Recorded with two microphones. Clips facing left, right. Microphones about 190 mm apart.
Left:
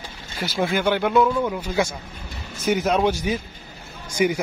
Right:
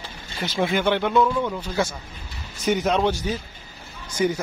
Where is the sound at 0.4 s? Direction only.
Centre (ahead or behind).